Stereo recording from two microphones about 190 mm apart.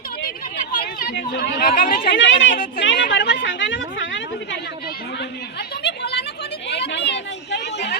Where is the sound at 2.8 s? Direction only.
75° left (ahead or behind).